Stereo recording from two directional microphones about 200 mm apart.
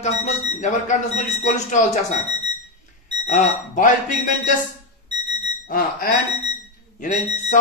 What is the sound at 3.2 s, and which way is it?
Speech, 35° left (ahead or behind).